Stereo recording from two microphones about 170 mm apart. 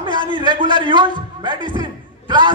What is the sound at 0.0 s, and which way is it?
A man's voice, 30° right (ahead or behind).